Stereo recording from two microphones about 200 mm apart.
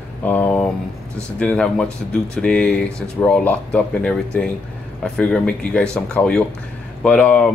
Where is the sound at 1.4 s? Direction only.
5° left (ahead or behind).